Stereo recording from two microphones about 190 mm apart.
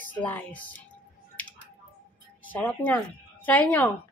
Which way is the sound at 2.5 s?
10° left (ahead or behind).